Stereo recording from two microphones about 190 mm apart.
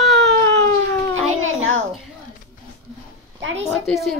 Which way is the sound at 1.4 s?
90° right.